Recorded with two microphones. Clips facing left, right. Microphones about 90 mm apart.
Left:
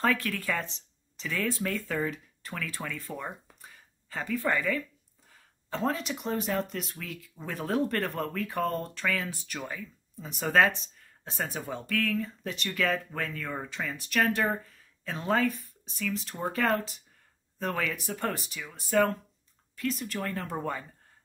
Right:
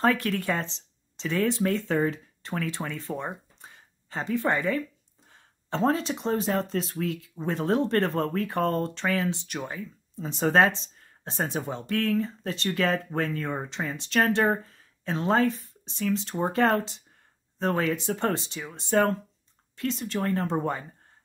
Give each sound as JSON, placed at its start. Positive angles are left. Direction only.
{"t": 0.0, "sound": "speech", "side_deg": -20}
{"t": 15.1, "sound": "speech", "side_deg": -25}